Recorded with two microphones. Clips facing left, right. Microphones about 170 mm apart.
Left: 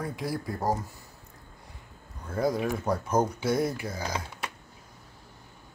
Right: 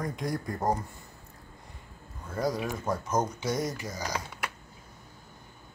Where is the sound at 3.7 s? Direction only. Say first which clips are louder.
Left 3 dB; 55° left (ahead or behind).